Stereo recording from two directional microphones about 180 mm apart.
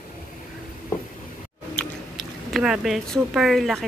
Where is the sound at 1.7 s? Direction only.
Centre (ahead or behind).